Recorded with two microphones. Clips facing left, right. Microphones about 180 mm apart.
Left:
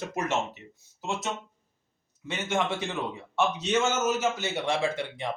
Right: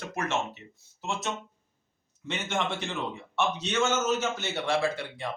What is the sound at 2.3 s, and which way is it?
Speech, 10° left (ahead or behind).